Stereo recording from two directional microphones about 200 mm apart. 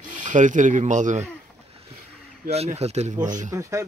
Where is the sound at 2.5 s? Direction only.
30° right (ahead or behind).